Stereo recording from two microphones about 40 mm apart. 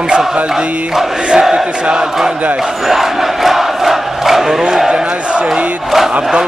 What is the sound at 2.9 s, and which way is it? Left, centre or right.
Crowd, centre.